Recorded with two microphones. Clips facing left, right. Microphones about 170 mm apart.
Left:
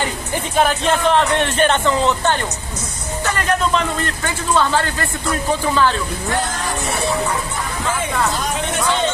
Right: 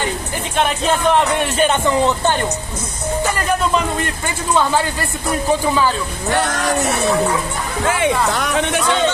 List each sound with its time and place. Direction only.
1.4 s speech: 10° right (ahead or behind)
3.4 s speech: 5° right (ahead or behind)
6.3 s speech: 70° right (ahead or behind)
7.8 s speech: 70° right (ahead or behind)